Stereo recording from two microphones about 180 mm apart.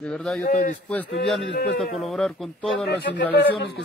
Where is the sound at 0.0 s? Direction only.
5° left (ahead or behind).